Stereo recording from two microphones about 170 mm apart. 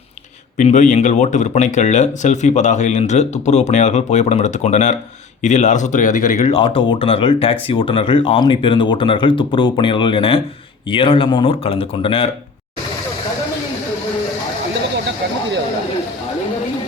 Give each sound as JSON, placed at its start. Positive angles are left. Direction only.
{"t": 0.5, "sound": "speech", "side_deg": 45}
{"t": 6.6, "sound": "speech", "side_deg": 30}